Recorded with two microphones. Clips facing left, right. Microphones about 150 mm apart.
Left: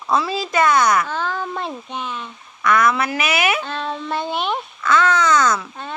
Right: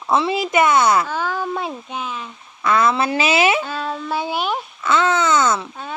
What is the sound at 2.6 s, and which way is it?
Speech, 25° right (ahead or behind).